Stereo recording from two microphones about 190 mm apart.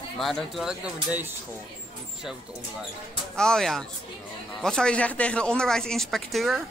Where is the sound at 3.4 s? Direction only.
5° left (ahead or behind).